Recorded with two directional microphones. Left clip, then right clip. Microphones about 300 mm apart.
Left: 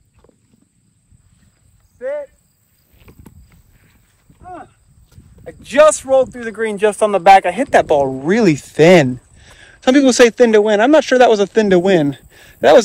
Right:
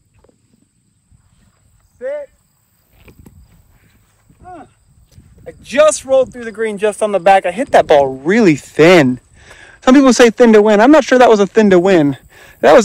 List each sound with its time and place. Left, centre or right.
2.0 s cricket: centre
4.4 s a sound: centre
5.4 s speech: centre
7.7 s speech: centre
8.0 s speech: right